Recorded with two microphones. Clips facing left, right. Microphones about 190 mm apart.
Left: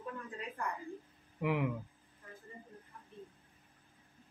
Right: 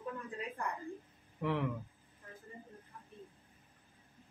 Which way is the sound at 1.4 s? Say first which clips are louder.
Left 1 dB; 10° left (ahead or behind).